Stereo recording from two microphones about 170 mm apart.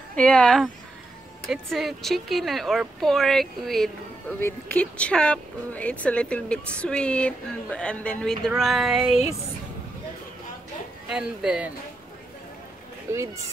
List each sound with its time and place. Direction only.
0.1 s speech: 5° left (ahead or behind)
4.4 s speech: 10° left (ahead or behind)
11.1 s speech: 5° right (ahead or behind)
13.1 s speech: 15° right (ahead or behind)